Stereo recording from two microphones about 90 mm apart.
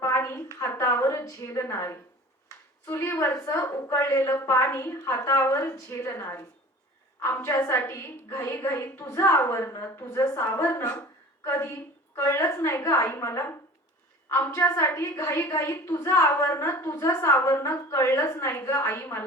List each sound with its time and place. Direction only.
0.0 s a sound: 30° left (ahead or behind)
2.8 s a woman's voice: 20° left (ahead or behind)
3.2 s a woman's voice: 35° left (ahead or behind)
14.5 s a woman's voice: 35° left (ahead or behind)